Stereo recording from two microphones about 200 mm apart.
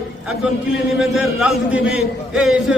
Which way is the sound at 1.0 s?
Centre (ahead or behind).